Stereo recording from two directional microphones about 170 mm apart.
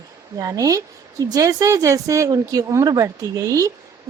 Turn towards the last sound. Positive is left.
turn(degrees=-20)  # may be behind; listen again after turning